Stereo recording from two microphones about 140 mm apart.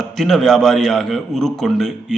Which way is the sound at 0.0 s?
Centre (ahead or behind).